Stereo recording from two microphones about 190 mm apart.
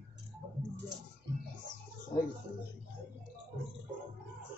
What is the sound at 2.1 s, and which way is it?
Speech, 35° left (ahead or behind).